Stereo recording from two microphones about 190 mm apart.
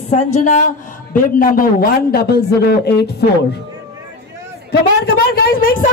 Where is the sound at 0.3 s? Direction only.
40° left (ahead or behind); by 3.1 s 60° left (ahead or behind).